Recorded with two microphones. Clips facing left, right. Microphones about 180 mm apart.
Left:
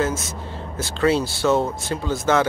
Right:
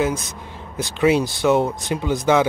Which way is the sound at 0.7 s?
15° right (ahead or behind).